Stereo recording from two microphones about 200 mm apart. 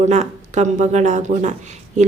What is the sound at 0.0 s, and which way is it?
Speech, 35° right (ahead or behind).